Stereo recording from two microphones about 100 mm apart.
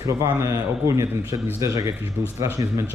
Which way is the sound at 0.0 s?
30° right (ahead or behind).